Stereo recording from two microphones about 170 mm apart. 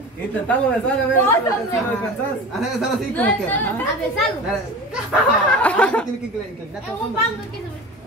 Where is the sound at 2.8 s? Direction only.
10° left (ahead or behind).